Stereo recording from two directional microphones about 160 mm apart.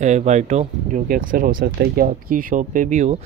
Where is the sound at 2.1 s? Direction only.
60° right (ahead or behind).